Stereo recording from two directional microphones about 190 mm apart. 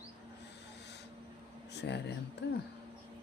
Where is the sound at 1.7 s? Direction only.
65° left (ahead or behind).